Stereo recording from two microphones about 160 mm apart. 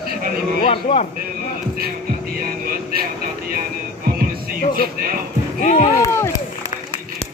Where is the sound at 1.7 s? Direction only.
70° right (ahead or behind).